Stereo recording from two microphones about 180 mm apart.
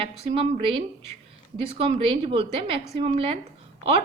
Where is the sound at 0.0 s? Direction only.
30° right (ahead or behind).